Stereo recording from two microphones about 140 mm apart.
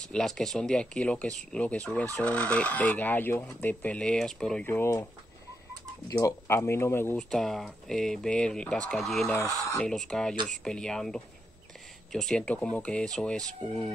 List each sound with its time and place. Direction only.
0.0 s speech: 5° left (ahead or behind)
4.6 s speech: 20° left (ahead or behind)
6.0 s speech: 25° left (ahead or behind)
7.2 s speech: 5° left (ahead or behind)
9.3 s speech: 20° left (ahead or behind)
9.8 s speech: 5° left (ahead or behind)